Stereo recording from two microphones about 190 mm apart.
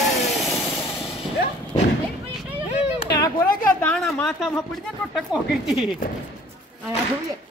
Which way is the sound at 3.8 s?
5° left (ahead or behind).